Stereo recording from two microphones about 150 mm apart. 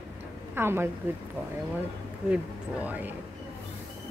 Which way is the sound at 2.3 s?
10° right (ahead or behind).